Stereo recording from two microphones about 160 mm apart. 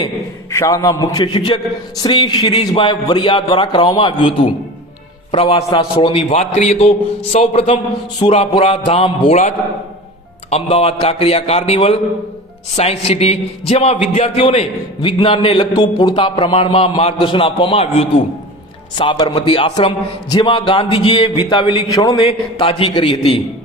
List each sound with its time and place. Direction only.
0.5 s a man's voice: 20° left (ahead or behind); by 9.4 s 40° left (ahead or behind)
10.5 s a man's voice: 40° left (ahead or behind); by 22.3 s 25° left (ahead or behind)
22.3 s a man's voice: 35° left (ahead or behind)